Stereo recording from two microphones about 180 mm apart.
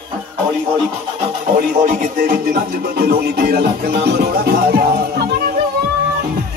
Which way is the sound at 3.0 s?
60° right (ahead or behind).